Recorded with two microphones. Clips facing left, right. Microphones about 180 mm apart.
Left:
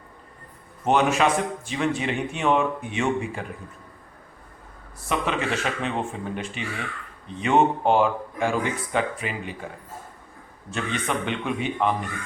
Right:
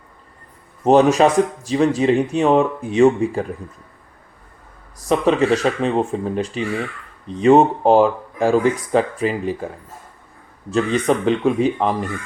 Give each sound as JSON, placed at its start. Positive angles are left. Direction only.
{"t": 0.9, "sound": "speech", "side_deg": -35}
{"t": 4.9, "sound": "speech", "side_deg": -35}
{"t": 10.7, "sound": "speech", "side_deg": -35}